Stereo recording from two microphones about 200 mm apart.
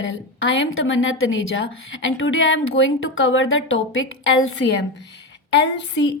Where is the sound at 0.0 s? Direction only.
75° left (ahead or behind); by 4.9 s 90° left.